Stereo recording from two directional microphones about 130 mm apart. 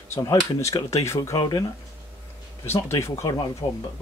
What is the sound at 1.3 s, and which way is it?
Speech, 30° left (ahead or behind).